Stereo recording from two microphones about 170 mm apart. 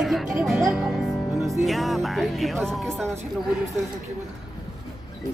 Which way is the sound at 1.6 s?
Centre (ahead or behind).